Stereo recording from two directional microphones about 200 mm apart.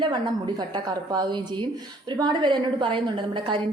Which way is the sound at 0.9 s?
20° right (ahead or behind).